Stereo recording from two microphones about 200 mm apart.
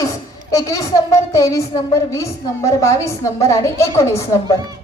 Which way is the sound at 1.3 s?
15° left (ahead or behind).